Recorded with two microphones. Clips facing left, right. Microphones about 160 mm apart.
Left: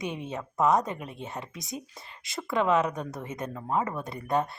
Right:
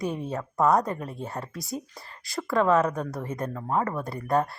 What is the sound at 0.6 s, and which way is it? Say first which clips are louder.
Speech: right 2 dB; 20° left (ahead or behind).